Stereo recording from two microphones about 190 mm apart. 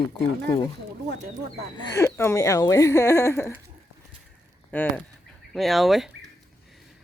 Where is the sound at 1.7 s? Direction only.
20° left (ahead or behind).